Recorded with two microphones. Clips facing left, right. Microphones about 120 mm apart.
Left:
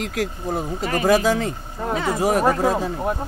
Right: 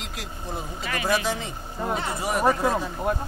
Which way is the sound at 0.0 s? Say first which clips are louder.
Left 11 dB; 50° left (ahead or behind).